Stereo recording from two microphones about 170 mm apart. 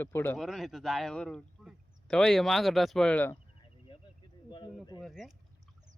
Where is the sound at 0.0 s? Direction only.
15° left (ahead or behind).